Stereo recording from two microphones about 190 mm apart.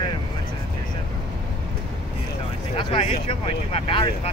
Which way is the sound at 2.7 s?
30° left (ahead or behind).